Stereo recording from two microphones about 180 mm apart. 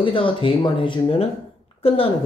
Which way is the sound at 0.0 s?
30° left (ahead or behind).